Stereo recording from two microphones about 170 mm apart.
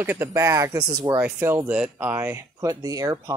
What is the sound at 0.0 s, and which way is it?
Speech, 10° right (ahead or behind).